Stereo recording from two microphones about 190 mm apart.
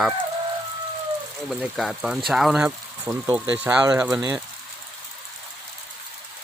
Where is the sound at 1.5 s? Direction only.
Centre (ahead or behind).